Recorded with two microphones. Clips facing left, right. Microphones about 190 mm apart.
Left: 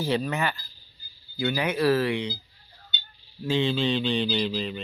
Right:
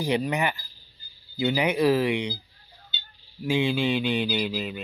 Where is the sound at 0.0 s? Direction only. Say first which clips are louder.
Right 1 dB; 15° right (ahead or behind).